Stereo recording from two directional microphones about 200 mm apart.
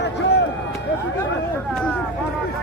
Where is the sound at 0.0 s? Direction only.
60° left (ahead or behind).